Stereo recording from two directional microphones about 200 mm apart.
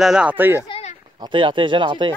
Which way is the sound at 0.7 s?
30° left (ahead or behind).